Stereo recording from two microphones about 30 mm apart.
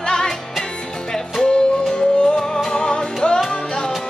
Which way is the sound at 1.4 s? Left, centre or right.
Left.